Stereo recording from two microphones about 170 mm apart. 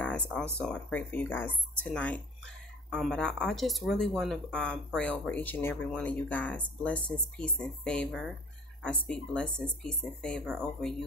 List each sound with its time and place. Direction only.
0.0 s speech: 5° left (ahead or behind)